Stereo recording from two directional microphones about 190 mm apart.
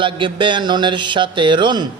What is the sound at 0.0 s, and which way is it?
Mantra, 25° right (ahead or behind).